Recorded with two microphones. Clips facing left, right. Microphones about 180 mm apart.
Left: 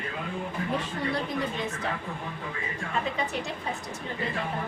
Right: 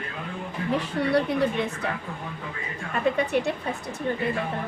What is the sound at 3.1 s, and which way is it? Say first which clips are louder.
Speech: right 14 dB; 60° right (ahead or behind).